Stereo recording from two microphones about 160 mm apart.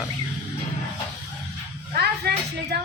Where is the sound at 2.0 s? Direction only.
90° right.